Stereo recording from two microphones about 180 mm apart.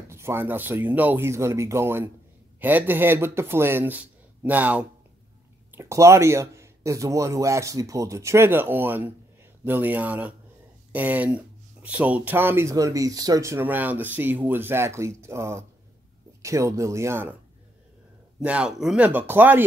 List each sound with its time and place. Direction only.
0.1 s speech: 15° right (ahead or behind)
18.4 s speech: 5° right (ahead or behind)